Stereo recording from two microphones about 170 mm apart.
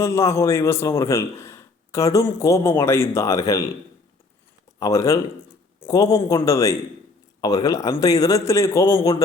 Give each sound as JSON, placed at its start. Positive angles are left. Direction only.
{"t": 0.0, "sound": "a man's voice", "side_deg": 15}
{"t": 4.8, "sound": "a man's voice", "side_deg": 20}